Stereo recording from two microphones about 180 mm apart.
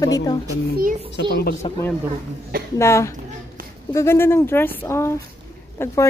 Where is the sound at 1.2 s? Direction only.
65° left (ahead or behind).